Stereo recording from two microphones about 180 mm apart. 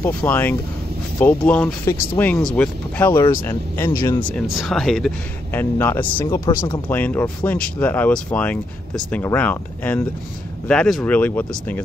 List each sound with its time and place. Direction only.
0.0 s speech: 10° left (ahead or behind)
4.3 s speech: centre (ahead or behind)